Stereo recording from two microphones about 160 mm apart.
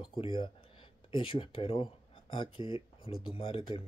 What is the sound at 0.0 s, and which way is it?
Speech, 30° left (ahead or behind).